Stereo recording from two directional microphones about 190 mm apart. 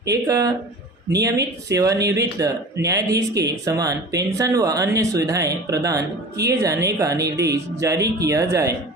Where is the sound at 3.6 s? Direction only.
20° right (ahead or behind).